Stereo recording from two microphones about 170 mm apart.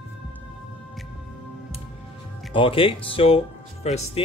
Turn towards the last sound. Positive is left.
turn(degrees=40)  # may be behind; listen again after turning